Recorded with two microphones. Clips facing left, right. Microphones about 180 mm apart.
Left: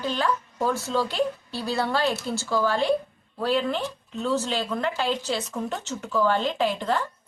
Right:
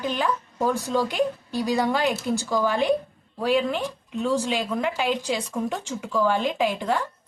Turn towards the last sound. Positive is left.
turn(degrees=-10)  # may be behind; listen again after turning